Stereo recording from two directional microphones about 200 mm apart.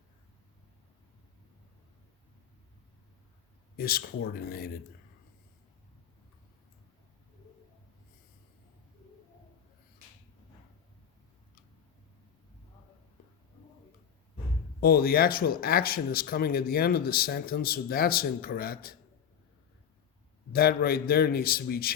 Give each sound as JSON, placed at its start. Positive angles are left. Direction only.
{"t": 3.8, "sound": "speech", "side_deg": 50}
{"t": 14.8, "sound": "speech", "side_deg": 50}
{"t": 20.5, "sound": "speech", "side_deg": 50}